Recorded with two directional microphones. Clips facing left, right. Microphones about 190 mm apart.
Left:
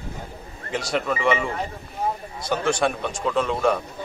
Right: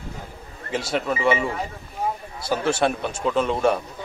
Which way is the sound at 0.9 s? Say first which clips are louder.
Even; 5° right (ahead or behind).